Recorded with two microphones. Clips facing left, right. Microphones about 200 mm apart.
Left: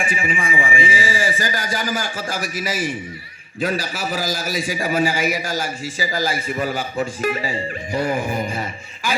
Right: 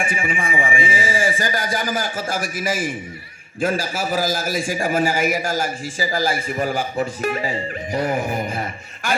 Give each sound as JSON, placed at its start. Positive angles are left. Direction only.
{"t": 0.0, "sound": "a man's voice", "side_deg": -50}